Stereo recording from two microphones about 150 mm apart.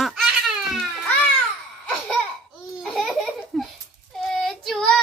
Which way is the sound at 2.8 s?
Centre (ahead or behind).